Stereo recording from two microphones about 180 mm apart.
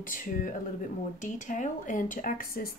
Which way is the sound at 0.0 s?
50° left (ahead or behind).